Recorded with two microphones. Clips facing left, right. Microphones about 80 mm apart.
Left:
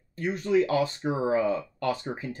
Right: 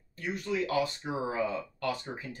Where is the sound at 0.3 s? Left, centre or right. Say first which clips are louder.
Left 7 dB; left.